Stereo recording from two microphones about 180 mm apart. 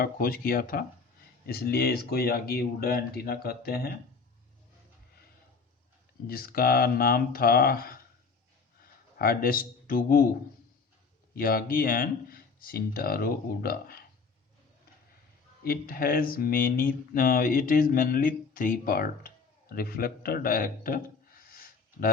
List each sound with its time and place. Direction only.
0.0 s speech: 55° left (ahead or behind)
6.2 s a man's voice: 55° left (ahead or behind)
11.3 s speech: 55° left (ahead or behind)
15.6 s speech: 55° left (ahead or behind)